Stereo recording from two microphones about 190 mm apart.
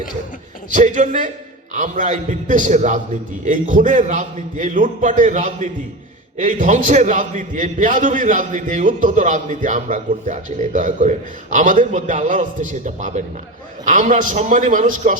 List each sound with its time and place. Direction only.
0.7 s a man's voice: 40° right (ahead or behind)